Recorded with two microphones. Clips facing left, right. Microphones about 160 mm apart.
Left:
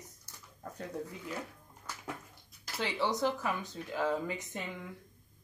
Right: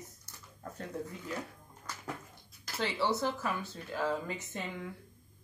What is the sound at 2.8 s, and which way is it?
Speech, 15° left (ahead or behind).